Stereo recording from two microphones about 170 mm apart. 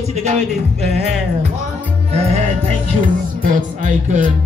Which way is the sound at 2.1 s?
35° right (ahead or behind).